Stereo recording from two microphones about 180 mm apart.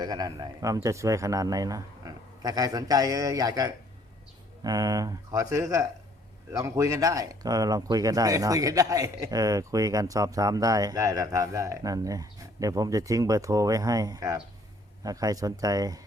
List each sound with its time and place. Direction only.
0.0 s speech: 20° right (ahead or behind)